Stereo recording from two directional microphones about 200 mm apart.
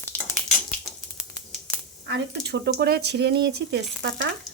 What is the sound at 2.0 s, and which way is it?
Speech, 60° right (ahead or behind).